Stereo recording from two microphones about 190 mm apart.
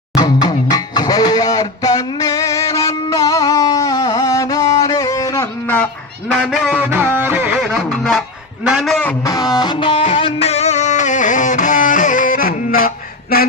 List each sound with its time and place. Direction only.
0.2 s music: 20° left (ahead or behind)
6.3 s music: centre (ahead or behind)
8.6 s a sound: centre (ahead or behind)
9.2 s music: 20° left (ahead or behind); by 12.9 s 50° left (ahead or behind)